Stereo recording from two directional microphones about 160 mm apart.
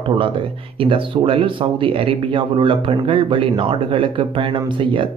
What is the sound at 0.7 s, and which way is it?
Speech, 35° right (ahead or behind).